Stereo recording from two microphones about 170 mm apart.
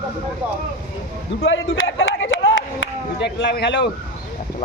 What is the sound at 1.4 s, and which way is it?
A man's voice, 90° left.